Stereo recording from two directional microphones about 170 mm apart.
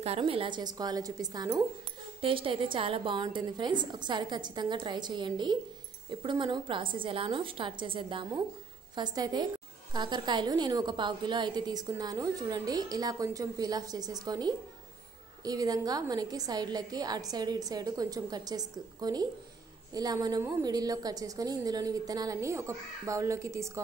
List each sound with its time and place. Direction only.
0.0 s a woman's voice: 35° right (ahead or behind); by 23.8 s 15° right (ahead or behind)